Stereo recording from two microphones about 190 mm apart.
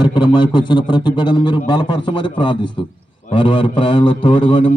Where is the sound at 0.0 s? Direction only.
25° left (ahead or behind).